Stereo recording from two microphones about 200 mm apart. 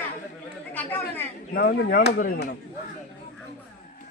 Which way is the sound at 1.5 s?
50° left (ahead or behind).